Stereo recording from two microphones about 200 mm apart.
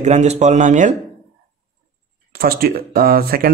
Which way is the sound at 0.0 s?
35° right (ahead or behind).